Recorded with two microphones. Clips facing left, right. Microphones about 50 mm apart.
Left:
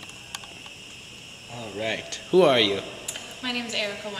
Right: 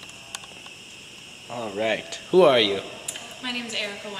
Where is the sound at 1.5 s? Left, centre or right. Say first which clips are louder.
Right 5 dB; right.